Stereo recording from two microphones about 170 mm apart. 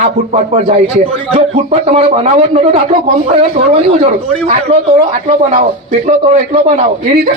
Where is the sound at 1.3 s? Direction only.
35° right (ahead or behind).